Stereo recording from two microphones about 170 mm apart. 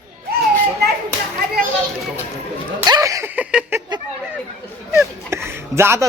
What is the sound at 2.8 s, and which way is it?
Speech, 20° right (ahead or behind).